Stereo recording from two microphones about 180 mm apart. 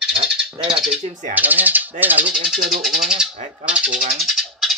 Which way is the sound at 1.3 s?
10° right (ahead or behind).